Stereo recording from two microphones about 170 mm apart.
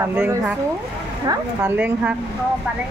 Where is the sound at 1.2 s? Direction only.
20° right (ahead or behind).